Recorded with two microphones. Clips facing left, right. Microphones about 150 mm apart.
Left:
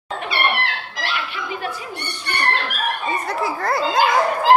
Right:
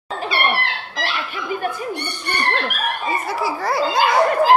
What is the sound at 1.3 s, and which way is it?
Chuckle, 45° right (ahead or behind).